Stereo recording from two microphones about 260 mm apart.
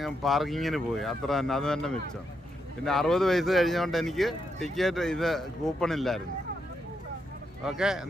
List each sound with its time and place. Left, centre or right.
0.0 s speech: centre
7.6 s speech: centre